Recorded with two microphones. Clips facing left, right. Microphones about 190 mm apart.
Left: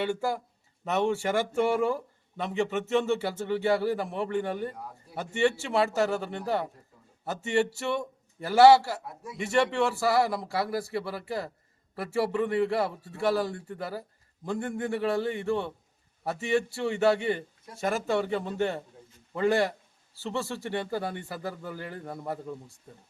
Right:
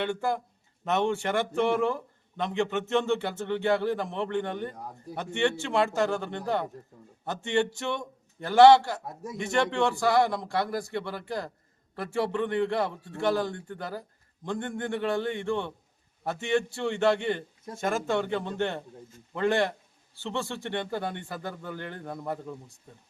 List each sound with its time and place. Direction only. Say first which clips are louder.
0.0 s a man's voice: even; 5° left (ahead or behind)
9.0 s speech: right 4 dB; 45° right (ahead or behind)
9.4 s a man's voice: left 1 dB; 5° left (ahead or behind)